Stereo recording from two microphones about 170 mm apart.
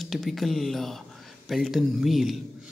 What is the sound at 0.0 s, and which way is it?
Speech, centre (ahead or behind).